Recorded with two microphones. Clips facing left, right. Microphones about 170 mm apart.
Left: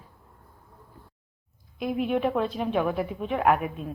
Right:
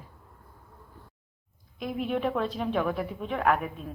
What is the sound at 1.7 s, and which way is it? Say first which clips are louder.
A woman's voice: left 4 dB; 5° left (ahead or behind).